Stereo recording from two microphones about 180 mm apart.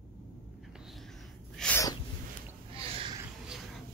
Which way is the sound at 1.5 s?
5° left (ahead or behind).